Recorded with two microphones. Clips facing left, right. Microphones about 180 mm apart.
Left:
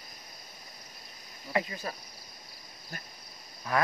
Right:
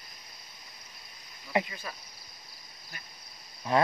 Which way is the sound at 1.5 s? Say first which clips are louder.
Right 2 dB; 20° right (ahead or behind).